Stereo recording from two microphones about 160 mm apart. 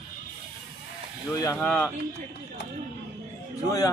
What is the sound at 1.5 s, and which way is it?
Speech, 15° left (ahead or behind).